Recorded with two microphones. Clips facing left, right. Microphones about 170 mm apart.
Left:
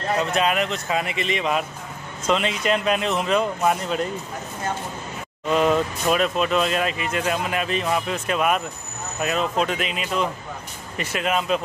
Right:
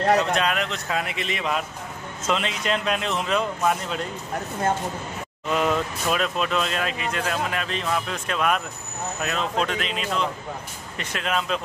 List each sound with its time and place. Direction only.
0.3 s speech: 5° left (ahead or behind)
5.5 s speech: centre (ahead or behind)